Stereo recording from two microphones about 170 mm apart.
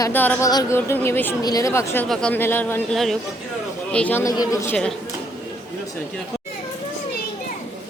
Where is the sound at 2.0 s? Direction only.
5° left (ahead or behind).